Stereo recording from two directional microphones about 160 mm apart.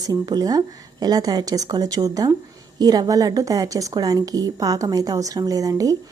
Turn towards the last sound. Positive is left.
turn(degrees=-20)  # may be behind; listen again after turning